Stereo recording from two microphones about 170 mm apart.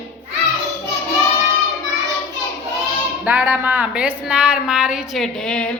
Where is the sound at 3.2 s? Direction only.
10° right (ahead or behind).